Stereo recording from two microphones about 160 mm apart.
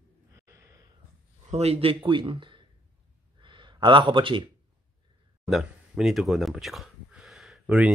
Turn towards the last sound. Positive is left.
turn(degrees=-5)  # may be behind; listen again after turning